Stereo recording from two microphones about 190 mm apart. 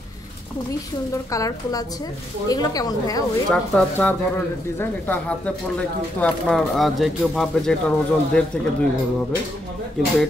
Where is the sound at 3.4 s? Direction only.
5° left (ahead or behind).